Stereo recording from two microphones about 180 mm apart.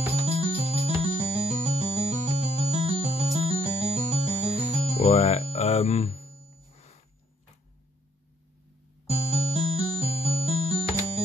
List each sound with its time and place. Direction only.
0.1 s music: 35° right (ahead or behind)
5.0 s speech: 35° left (ahead or behind)
5.5 s music: 35° left (ahead or behind)
6.2 s music: 35° right (ahead or behind)
9.0 s music: 35° right (ahead or behind)